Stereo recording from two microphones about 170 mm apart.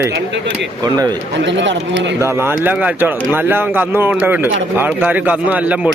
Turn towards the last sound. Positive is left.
turn(degrees=-10)  # may be behind; listen again after turning